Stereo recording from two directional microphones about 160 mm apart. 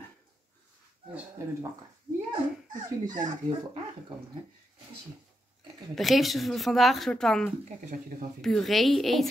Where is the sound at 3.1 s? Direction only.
50° right (ahead or behind).